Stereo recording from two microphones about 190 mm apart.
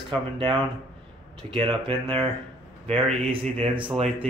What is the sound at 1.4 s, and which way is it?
Speech, 25° right (ahead or behind).